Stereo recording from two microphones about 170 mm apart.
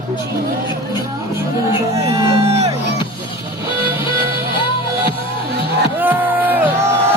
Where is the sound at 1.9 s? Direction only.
25° right (ahead or behind).